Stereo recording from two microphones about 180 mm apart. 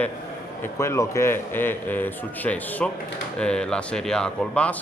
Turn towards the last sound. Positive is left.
turn(degrees=5)  # may be behind; listen again after turning